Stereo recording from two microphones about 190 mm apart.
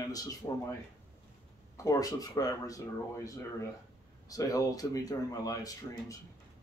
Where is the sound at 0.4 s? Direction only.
15° left (ahead or behind).